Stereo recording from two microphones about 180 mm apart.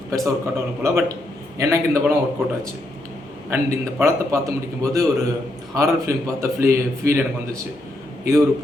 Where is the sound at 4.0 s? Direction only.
15° right (ahead or behind).